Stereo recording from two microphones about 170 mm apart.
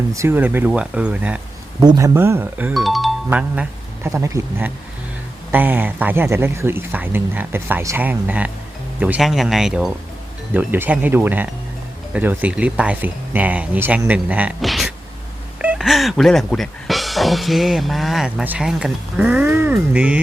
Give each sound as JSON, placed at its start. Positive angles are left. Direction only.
{"t": 0.1, "sound": "speech", "side_deg": -15}
{"t": 1.8, "sound": "speech", "side_deg": -20}
{"t": 2.8, "sound": "speech", "side_deg": 0}